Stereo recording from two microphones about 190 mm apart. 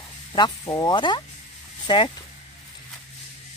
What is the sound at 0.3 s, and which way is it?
Speech, 20° left (ahead or behind).